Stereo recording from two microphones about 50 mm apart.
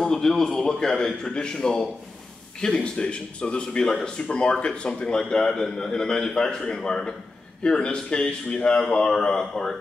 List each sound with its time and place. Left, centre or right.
0.0 s a man's voice: centre